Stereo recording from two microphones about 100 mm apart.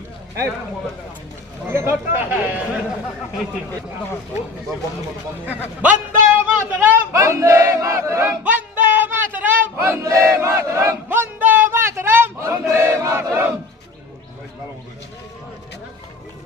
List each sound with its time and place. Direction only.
1.7 s speech: 25° right (ahead or behind)
5.4 s a man's voice: 15° right (ahead or behind)
7.1 s battle cry: 30° right (ahead or behind)
9.8 s battle cry: 30° right (ahead or behind)
11.1 s choir: 20° right (ahead or behind)